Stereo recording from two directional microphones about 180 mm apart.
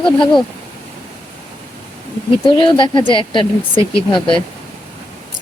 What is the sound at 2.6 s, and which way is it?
Speech, 25° left (ahead or behind).